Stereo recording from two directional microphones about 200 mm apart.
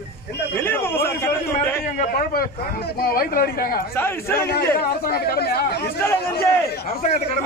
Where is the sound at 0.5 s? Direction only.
10° left (ahead or behind).